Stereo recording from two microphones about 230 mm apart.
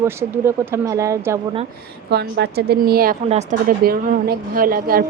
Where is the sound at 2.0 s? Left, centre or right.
Right.